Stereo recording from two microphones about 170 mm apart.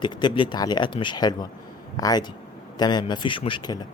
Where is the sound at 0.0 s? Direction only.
25° left (ahead or behind).